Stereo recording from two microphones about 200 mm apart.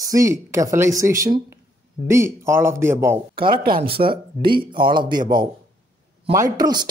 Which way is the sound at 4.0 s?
40° right (ahead or behind).